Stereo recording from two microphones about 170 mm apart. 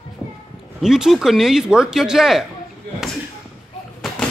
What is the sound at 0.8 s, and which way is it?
Speech, centre (ahead or behind).